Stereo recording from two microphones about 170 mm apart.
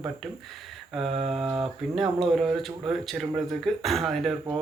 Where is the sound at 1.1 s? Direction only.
35° right (ahead or behind).